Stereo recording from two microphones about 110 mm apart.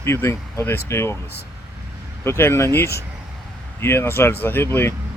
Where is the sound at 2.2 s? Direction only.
25° left (ahead or behind).